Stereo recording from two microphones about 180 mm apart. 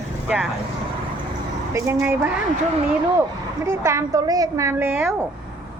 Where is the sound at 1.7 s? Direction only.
15° right (ahead or behind).